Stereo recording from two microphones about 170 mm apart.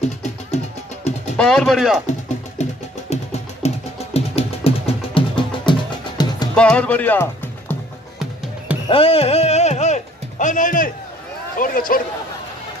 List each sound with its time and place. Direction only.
1.3 s speech: 5° left (ahead or behind)
2.6 s music: 40° left (ahead or behind)
6.5 s speech: 5° left (ahead or behind)
8.8 s speech: 35° left (ahead or behind); by 12.0 s 55° left (ahead or behind)